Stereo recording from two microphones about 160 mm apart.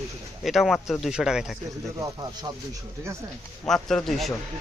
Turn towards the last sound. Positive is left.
turn(degrees=0)  # may be behind; listen again after turning